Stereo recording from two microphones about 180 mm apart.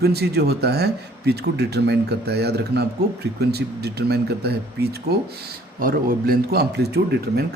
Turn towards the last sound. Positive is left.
turn(degrees=-65)  # may be behind; listen again after turning